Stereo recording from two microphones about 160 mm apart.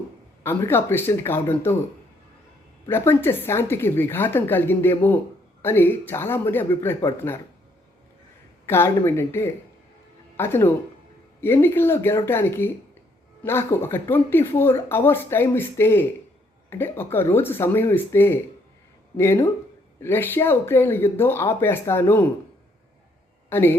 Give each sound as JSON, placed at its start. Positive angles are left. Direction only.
{"t": 0.4, "sound": "speech", "side_deg": 15}
{"t": 2.9, "sound": "speech", "side_deg": 15}
{"t": 8.6, "sound": "speech", "side_deg": 15}
{"t": 23.5, "sound": "speech", "side_deg": 15}